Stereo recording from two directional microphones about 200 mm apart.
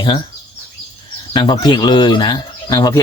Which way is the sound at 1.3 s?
20° left (ahead or behind).